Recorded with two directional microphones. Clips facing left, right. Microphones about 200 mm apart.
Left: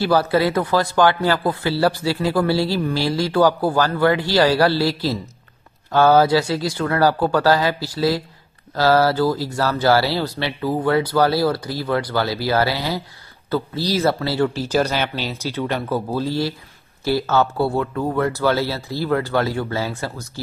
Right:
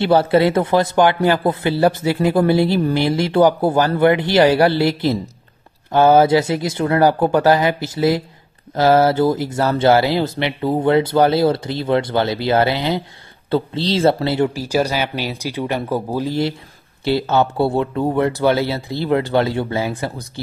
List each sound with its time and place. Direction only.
0.0 s speech: 25° right (ahead or behind)